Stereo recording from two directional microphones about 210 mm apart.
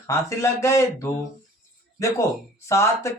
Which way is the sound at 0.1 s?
15° left (ahead or behind).